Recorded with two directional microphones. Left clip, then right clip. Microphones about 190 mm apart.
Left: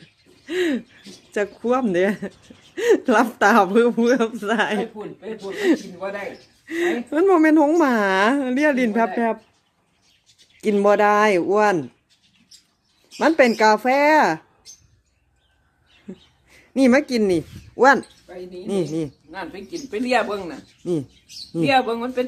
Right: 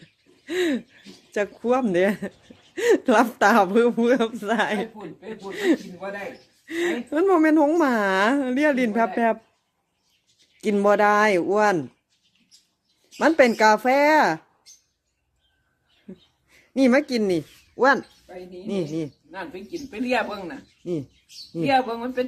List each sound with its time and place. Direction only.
0.4 s a sound: 10° right (ahead or behind)
2.7 s speech: 10° right (ahead or behind)
6.0 s a woman's voice: 5° left (ahead or behind)
9.1 s speech: 15° right (ahead or behind)
10.6 s speech: 10° right (ahead or behind)
13.1 s speech: 10° right (ahead or behind)
16.0 s a sound: centre (ahead or behind)
18.6 s a woman's voice: centre (ahead or behind)
19.3 s speech: 30° left (ahead or behind)